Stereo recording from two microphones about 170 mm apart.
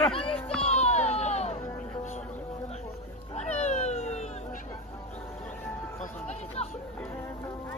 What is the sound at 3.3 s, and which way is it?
Cat, 40° left (ahead or behind).